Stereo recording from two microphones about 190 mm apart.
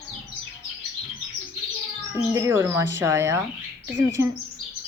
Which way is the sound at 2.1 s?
15° right (ahead or behind).